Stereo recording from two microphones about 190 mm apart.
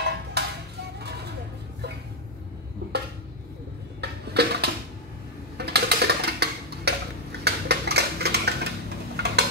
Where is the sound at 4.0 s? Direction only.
60° right (ahead or behind).